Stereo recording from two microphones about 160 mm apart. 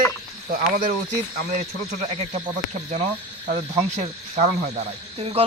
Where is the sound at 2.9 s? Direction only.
45° right (ahead or behind).